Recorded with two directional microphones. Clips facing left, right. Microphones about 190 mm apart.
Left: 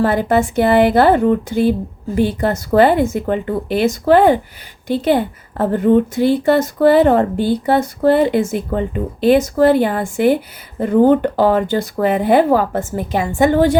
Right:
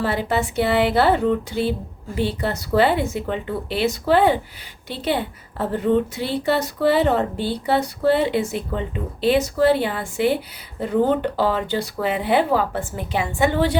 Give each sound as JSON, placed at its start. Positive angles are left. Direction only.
{"t": 0.0, "sound": "a woman's voice", "side_deg": 50}